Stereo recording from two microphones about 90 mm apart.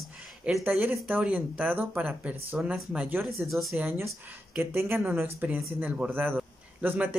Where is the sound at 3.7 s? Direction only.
25° right (ahead or behind).